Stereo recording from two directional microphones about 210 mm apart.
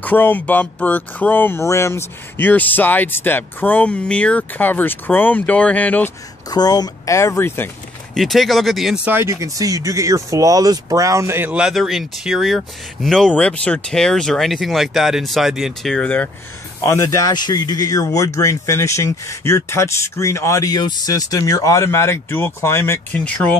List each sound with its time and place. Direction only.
0.0 s a man's voice: 10° left (ahead or behind)
6.5 s a man's voice: 20° left (ahead or behind)